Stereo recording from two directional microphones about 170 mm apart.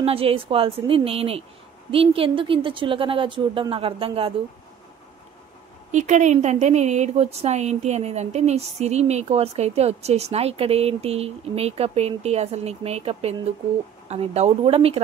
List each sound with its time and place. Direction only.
0.0 s a woman's voice: 35° right (ahead or behind)
5.9 s a woman's voice: 45° right (ahead or behind)